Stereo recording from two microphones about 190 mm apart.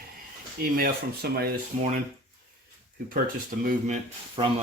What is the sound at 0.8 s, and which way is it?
Speech, 55° right (ahead or behind).